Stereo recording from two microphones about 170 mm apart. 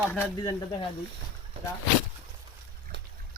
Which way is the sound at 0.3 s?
25° left (ahead or behind).